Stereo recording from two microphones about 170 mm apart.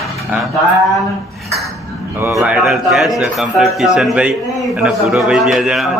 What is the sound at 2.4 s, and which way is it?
A man's voice, 5° right (ahead or behind).